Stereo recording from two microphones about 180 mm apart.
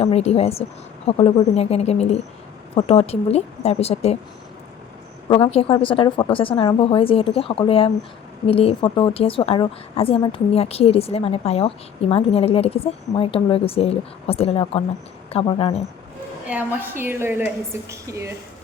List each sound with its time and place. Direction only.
0.0 s a woman's voice: 35° left (ahead or behind)
5.3 s a woman's voice: 30° left (ahead or behind)
16.5 s a woman's voice: 10° right (ahead or behind)